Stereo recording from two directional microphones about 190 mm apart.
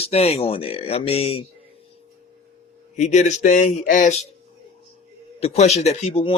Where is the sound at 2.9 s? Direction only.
40° left (ahead or behind).